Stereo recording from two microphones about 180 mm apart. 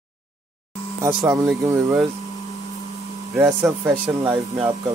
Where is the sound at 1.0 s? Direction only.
15° right (ahead or behind).